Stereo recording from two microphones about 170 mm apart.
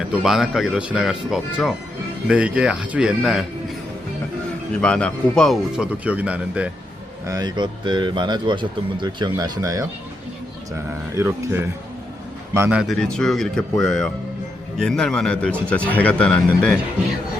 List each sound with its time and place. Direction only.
0.1 s speech: 5° right (ahead or behind)
4.8 s speech: 5° left (ahead or behind)
7.3 s speech: 25° right (ahead or behind)
11.1 s speech: 15° right (ahead or behind)
12.8 s speech: 5° left (ahead or behind)